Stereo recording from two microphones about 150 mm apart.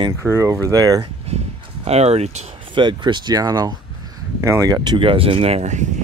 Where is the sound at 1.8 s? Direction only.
45° right (ahead or behind).